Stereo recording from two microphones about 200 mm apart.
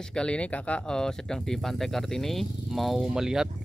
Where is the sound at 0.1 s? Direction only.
5° left (ahead or behind).